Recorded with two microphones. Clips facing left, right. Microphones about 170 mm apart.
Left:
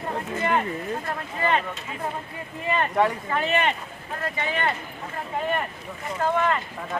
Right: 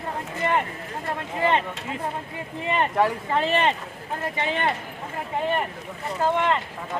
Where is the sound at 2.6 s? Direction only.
25° right (ahead or behind).